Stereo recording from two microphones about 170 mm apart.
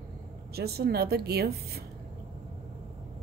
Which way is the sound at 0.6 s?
65° right (ahead or behind).